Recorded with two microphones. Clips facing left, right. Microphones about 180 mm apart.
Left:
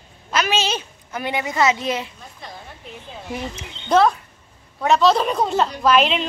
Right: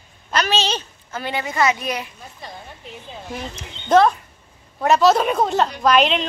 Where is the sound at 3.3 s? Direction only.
5° left (ahead or behind).